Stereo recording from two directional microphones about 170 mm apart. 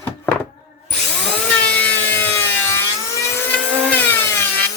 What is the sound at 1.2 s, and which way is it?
Wood, 10° left (ahead or behind).